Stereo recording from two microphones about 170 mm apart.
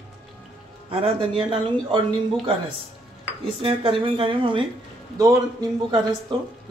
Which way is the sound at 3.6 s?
30° right (ahead or behind).